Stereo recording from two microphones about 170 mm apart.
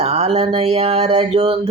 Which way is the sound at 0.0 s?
40° right (ahead or behind).